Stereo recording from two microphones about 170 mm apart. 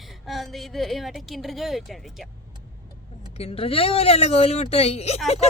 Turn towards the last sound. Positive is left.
turn(degrees=35)  # may be behind; listen again after turning